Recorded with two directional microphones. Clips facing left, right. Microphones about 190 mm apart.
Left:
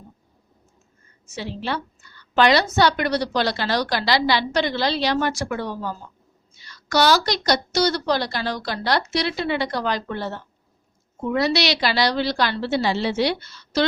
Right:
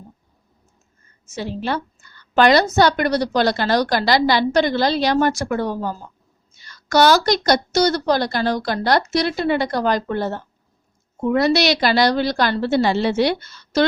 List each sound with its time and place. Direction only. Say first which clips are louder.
1.4 s a woman's voice: right 4 dB; 45° right (ahead or behind)